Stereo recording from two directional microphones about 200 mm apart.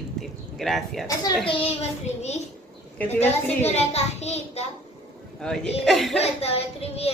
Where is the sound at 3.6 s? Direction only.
30° left (ahead or behind).